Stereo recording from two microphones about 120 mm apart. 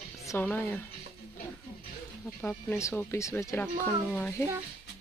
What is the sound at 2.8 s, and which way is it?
Speech, 20° left (ahead or behind).